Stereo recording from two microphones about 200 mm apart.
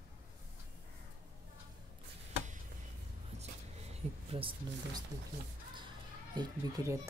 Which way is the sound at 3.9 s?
30° right (ahead or behind).